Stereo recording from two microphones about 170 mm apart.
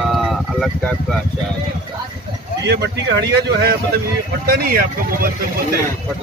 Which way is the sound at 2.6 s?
75° right (ahead or behind).